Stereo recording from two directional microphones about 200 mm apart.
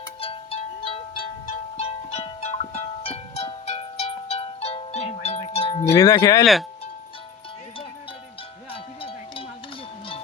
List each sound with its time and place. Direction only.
0.2 s music: 30° left (ahead or behind)
5.7 s a sound: 15° left (ahead or behind)
6.4 s speech: centre (ahead or behind)
8.7 s cowbell: 25° left (ahead or behind)